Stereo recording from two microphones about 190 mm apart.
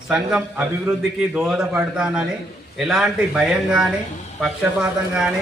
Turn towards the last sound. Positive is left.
turn(degrees=-5)  # may be behind; listen again after turning